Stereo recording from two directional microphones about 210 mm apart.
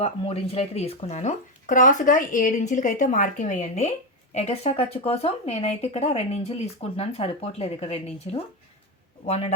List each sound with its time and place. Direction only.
0.0 s speech: 30° left (ahead or behind)